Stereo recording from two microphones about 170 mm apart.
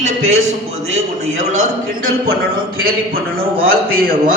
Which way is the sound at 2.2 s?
60° right (ahead or behind).